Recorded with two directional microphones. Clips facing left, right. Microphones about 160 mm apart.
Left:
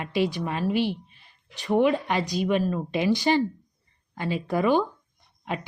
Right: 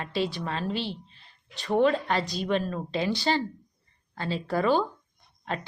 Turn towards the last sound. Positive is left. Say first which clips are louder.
# left 2 dB
turn(degrees=10)  # may be behind; listen again after turning